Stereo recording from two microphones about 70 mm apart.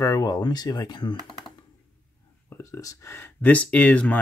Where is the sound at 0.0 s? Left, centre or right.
Left.